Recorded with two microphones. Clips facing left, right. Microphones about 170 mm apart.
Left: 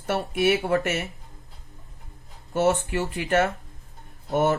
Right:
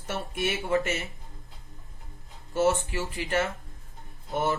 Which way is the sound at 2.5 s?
60° left (ahead or behind).